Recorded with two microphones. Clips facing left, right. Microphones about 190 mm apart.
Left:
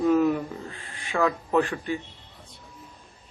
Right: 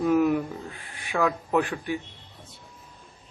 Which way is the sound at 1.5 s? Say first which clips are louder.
Left 1 dB; 15° right (ahead or behind).